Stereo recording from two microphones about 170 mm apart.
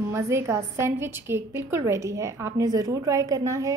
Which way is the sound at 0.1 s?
15° right (ahead or behind).